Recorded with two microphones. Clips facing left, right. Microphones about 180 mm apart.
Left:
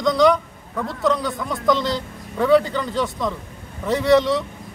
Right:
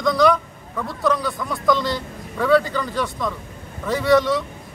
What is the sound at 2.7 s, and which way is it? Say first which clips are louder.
Speech: left 1 dB; 25° left (ahead or behind).